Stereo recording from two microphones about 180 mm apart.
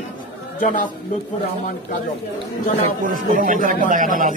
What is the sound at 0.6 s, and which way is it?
Speech, 50° left (ahead or behind).